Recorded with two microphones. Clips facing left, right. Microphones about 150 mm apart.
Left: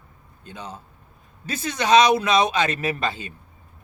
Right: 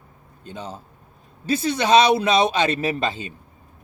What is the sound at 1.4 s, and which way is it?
A man's voice, 35° right (ahead or behind).